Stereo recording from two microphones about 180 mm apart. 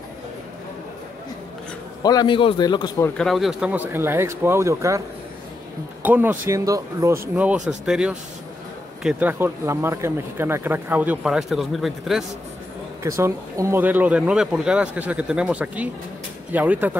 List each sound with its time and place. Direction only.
2.0 s a man's voice: 25° left (ahead or behind)
3.2 s speech: centre (ahead or behind); by 5.0 s 15° right (ahead or behind)
6.0 s speech: 10° right (ahead or behind)
13.0 s speech: 15° right (ahead or behind)